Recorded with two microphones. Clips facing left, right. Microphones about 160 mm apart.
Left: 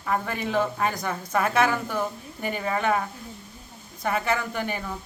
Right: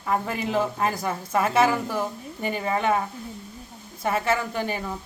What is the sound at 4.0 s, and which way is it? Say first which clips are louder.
Speech: right 2 dB; 5° right (ahead or behind).